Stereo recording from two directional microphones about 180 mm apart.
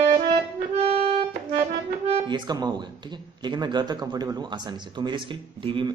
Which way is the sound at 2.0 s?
25° right (ahead or behind).